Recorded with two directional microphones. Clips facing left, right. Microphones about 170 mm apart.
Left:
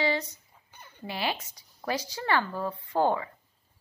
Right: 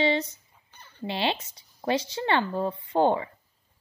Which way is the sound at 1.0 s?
25° right (ahead or behind).